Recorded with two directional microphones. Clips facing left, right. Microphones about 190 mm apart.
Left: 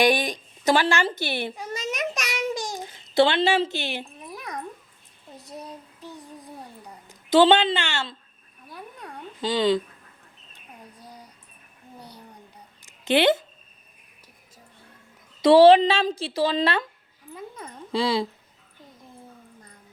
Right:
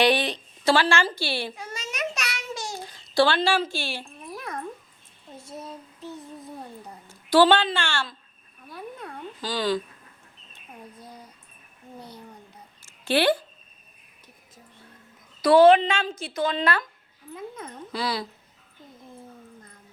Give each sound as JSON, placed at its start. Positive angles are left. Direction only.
{"t": 0.0, "sound": "a child's voice", "side_deg": 10}
{"t": 5.4, "sound": "child singing", "side_deg": 15}
{"t": 7.1, "sound": "a woman's voice", "side_deg": 20}
{"t": 9.0, "sound": "a sound", "side_deg": 20}
{"t": 12.8, "sound": "a sound", "side_deg": 20}
{"t": 15.4, "sound": "speech", "side_deg": 30}
{"t": 17.9, "sound": "speech", "side_deg": 25}